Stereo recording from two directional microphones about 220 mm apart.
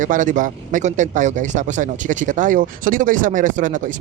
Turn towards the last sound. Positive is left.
turn(degrees=-35)  # may be behind; listen again after turning